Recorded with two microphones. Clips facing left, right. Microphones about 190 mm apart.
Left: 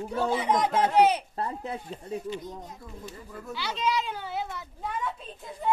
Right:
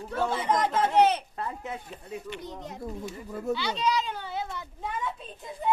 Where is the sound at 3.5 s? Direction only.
5° left (ahead or behind).